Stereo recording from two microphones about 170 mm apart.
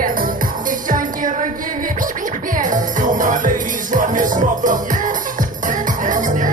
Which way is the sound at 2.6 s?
50° right (ahead or behind).